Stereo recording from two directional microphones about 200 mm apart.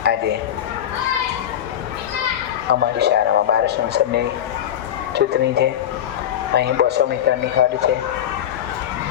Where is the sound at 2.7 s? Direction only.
55° right (ahead or behind).